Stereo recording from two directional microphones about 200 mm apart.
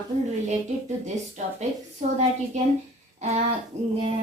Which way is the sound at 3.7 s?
35° right (ahead or behind).